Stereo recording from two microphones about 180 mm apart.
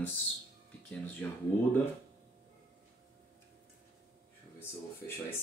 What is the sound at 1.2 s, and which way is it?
Speech, 10° left (ahead or behind).